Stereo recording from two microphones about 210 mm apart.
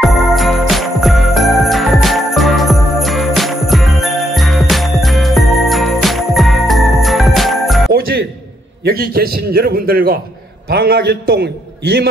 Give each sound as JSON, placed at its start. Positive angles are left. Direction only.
{"t": 0.0, "sound": "jingle bell", "side_deg": 0}
{"t": 7.9, "sound": "music", "side_deg": -50}
{"t": 8.8, "sound": "a man's voice", "side_deg": -45}